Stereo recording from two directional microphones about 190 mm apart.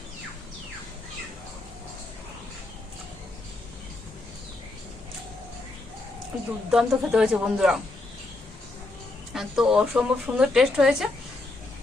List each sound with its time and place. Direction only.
6.7 s speech: 5° right (ahead or behind)
9.3 s speech: 5° right (ahead or behind)